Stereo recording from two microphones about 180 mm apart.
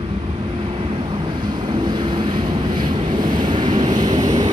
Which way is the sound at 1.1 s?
25° right (ahead or behind).